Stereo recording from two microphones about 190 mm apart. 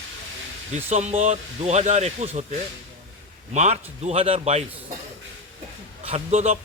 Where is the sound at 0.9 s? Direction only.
35° right (ahead or behind).